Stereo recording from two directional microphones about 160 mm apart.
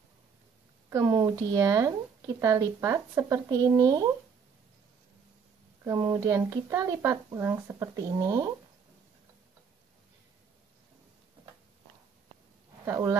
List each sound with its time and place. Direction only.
0.8 s speech: 20° right (ahead or behind)
5.9 s speech: 25° right (ahead or behind)
12.8 s speech: 20° right (ahead or behind)